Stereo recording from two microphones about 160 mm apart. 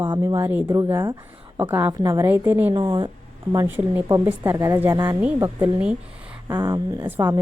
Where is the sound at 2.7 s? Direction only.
25° right (ahead or behind); by 6.0 s 10° right (ahead or behind).